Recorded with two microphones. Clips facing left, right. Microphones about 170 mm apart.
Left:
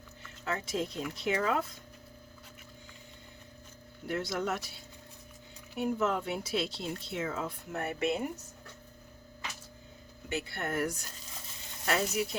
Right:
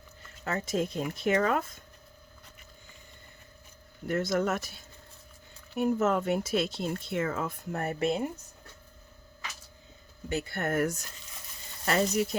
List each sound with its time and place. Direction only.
0.4 s speech: 45° right (ahead or behind)
4.0 s speech: 45° right (ahead or behind)
10.2 s speech: 45° right (ahead or behind)